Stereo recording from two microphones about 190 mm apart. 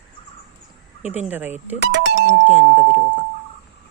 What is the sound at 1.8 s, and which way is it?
Speech, 65° right (ahead or behind).